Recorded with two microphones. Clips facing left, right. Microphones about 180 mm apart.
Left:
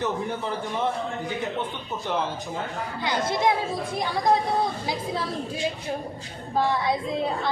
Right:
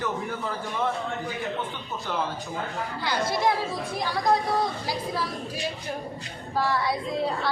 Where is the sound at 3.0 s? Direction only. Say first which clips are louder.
Left 1 dB; 20° left (ahead or behind).